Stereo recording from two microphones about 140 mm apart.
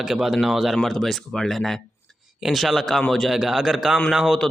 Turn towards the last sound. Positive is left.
turn(degrees=0)  # may be behind; listen again after turning